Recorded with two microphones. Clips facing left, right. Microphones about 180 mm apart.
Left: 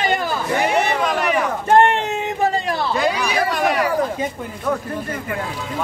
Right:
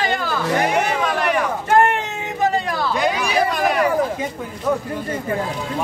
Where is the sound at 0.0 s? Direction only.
20° left (ahead or behind).